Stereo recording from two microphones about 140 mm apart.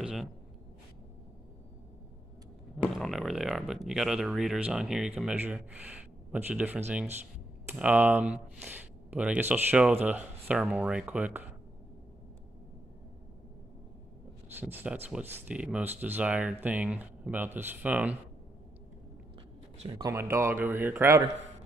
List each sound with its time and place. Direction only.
0.0 s writing: centre (ahead or behind)
2.8 s speech: centre (ahead or behind)
14.6 s speech: 15° right (ahead or behind)
20.0 s speech: 20° right (ahead or behind)